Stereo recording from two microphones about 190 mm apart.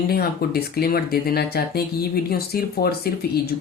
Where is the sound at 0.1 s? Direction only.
55° left (ahead or behind).